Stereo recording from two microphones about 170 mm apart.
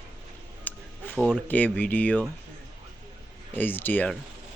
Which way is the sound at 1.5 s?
10° left (ahead or behind).